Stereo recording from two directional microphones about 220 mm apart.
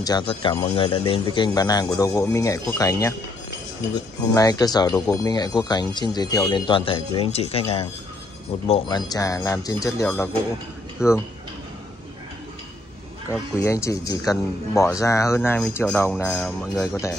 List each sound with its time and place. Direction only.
0.0 s speech: 20° left (ahead or behind)
11.0 s speech: 5° right (ahead or behind)
13.6 s speech: 15° left (ahead or behind)